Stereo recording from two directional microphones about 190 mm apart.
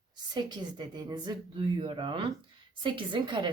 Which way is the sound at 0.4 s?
20° right (ahead or behind).